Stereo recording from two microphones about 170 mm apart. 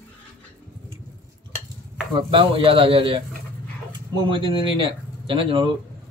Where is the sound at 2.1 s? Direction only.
30° right (ahead or behind).